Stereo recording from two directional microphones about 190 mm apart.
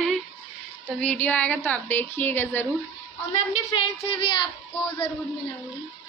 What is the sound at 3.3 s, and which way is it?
A woman's voice, 30° left (ahead or behind).